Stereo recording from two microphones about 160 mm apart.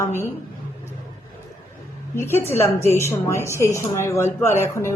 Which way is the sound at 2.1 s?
15° left (ahead or behind).